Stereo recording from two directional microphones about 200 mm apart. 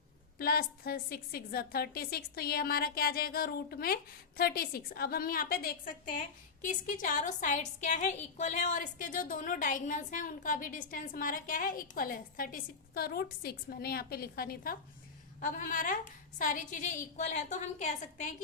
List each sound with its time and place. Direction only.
0.3 s a woman's voice: 50° left (ahead or behind)